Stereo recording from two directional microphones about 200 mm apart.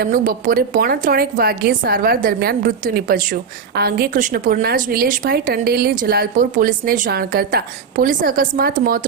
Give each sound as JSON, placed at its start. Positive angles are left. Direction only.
{"t": 0.0, "sound": "a woman's voice", "side_deg": -45}